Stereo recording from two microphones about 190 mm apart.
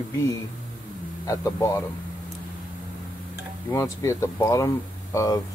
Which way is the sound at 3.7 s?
15° left (ahead or behind).